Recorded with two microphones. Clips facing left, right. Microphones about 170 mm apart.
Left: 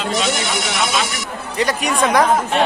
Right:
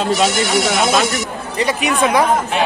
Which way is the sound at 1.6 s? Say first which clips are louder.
Right 1 dB; centre (ahead or behind).